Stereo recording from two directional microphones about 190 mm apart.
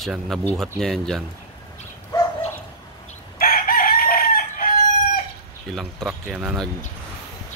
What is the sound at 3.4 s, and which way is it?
Chicken, 50° left (ahead or behind).